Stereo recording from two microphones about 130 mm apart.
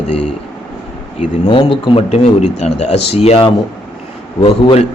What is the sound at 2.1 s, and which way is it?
A man's voice, 55° left (ahead or behind).